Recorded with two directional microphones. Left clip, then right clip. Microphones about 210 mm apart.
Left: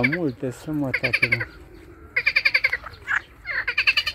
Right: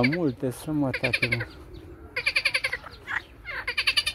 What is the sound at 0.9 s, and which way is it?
Speech, 35° right (ahead or behind).